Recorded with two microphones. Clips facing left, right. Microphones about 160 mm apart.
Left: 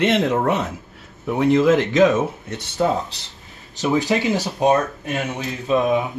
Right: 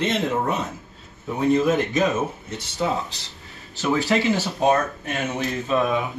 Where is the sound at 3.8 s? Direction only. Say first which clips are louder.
Left 2 dB; 15° left (ahead or behind).